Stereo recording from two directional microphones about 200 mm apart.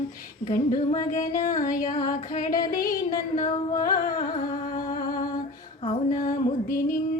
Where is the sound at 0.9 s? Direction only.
40° left (ahead or behind).